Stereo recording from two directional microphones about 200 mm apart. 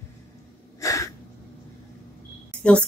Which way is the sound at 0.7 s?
15° left (ahead or behind).